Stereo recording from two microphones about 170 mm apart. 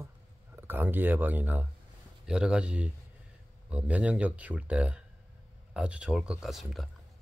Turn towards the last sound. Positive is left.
turn(degrees=0)  # may be behind; listen again after turning